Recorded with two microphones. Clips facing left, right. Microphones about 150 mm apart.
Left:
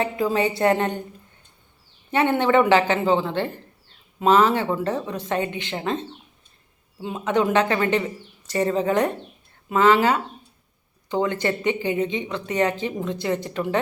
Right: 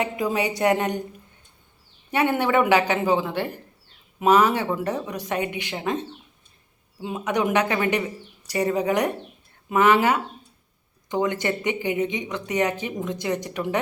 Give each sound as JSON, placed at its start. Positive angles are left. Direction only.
{"t": 0.0, "sound": "speech", "side_deg": -15}
{"t": 2.0, "sound": "a man's voice", "side_deg": -15}